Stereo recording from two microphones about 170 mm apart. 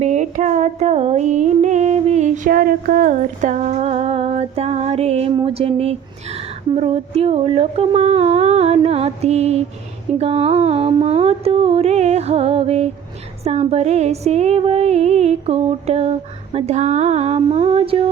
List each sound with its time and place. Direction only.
0.0 s music: 45° right (ahead or behind)
10.2 s mantra: 35° right (ahead or behind)
13.4 s music: 40° right (ahead or behind)